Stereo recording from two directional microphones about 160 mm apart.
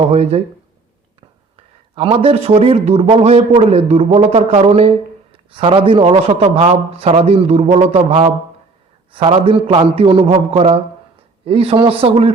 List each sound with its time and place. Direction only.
0.1 s a man's voice: 40° right (ahead or behind)
1.5 s a man's voice: 35° right (ahead or behind)